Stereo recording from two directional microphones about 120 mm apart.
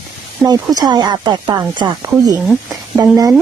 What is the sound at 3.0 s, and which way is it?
Speech, 30° right (ahead or behind).